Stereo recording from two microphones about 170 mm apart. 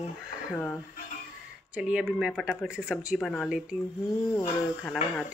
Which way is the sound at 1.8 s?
5° right (ahead or behind).